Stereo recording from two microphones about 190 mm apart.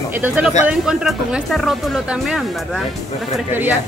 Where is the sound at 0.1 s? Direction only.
10° right (ahead or behind).